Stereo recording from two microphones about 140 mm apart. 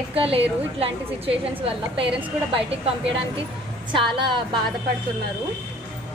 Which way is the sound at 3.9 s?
35° right (ahead or behind).